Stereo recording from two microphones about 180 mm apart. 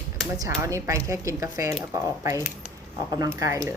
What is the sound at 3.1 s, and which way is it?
Speech, 20° right (ahead or behind).